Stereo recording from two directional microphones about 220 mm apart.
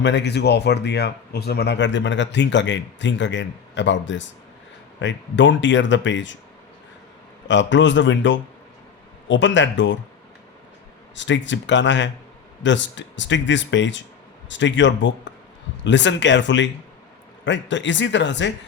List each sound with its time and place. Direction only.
0.0 s speech: 50° left (ahead or behind)
7.4 s speech: 55° left (ahead or behind)
11.1 s speech: 55° left (ahead or behind)